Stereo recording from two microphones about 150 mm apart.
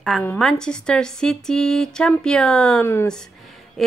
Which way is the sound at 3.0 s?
5° left (ahead or behind).